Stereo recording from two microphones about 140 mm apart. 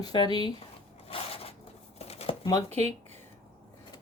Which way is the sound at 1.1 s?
45° left (ahead or behind).